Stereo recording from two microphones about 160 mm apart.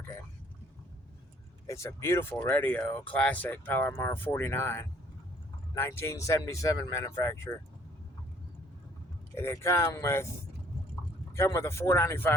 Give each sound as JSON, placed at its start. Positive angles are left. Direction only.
{"t": 1.6, "sound": "speech", "side_deg": 20}
{"t": 9.3, "sound": "speech", "side_deg": 15}
{"t": 11.3, "sound": "speech", "side_deg": 15}